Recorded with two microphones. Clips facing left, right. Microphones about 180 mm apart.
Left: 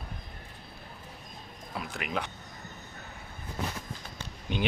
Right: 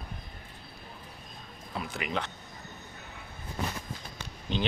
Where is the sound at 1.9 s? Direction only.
Centre (ahead or behind).